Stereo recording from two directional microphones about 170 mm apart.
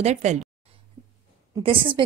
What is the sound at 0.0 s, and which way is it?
Speech, 40° right (ahead or behind).